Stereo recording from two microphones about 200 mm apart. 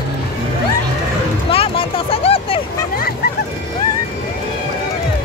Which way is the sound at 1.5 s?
30° left (ahead or behind).